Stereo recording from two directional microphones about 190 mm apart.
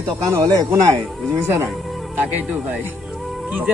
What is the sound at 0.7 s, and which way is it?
Speech, 5° right (ahead or behind).